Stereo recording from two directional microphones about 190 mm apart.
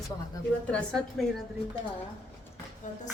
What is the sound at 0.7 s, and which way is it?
Speech, 5° left (ahead or behind).